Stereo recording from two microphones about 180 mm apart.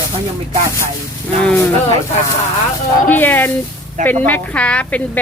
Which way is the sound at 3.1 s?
10° left (ahead or behind).